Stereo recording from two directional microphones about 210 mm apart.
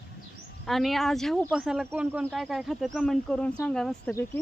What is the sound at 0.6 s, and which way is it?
Speech, centre (ahead or behind).